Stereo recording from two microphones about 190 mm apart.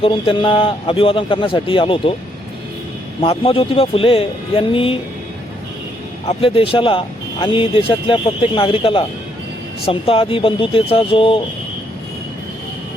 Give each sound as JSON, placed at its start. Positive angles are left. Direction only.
{"t": 0.0, "sound": "a man's voice", "side_deg": 25}
{"t": 3.2, "sound": "a man's voice", "side_deg": 30}
{"t": 6.2, "sound": "a man's voice", "side_deg": 30}